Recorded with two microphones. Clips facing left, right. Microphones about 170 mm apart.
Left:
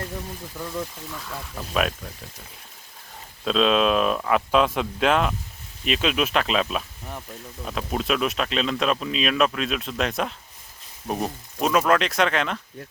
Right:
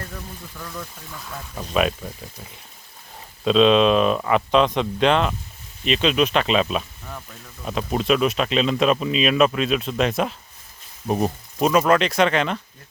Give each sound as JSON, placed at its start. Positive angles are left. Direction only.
{"t": 0.5, "sound": "speech", "side_deg": 25}
{"t": 1.5, "sound": "speech", "side_deg": 0}
{"t": 3.4, "sound": "speech", "side_deg": 0}
{"t": 7.0, "sound": "a sound", "side_deg": 20}
{"t": 7.6, "sound": "speech", "side_deg": -5}